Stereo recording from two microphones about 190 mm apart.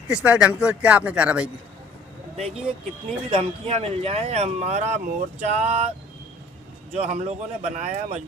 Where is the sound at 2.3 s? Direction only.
35° right (ahead or behind).